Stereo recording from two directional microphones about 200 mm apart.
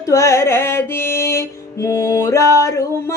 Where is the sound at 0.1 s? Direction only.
15° left (ahead or behind).